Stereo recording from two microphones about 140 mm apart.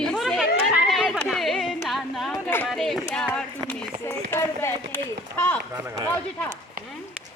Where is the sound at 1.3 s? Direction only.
Centre (ahead or behind).